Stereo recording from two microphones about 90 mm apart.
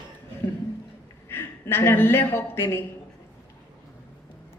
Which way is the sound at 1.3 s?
25° left (ahead or behind).